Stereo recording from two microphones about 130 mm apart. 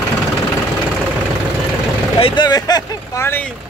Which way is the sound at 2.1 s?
45° left (ahead or behind).